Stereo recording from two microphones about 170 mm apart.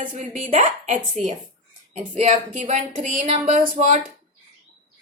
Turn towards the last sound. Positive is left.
turn(degrees=-40)  # may be behind; listen again after turning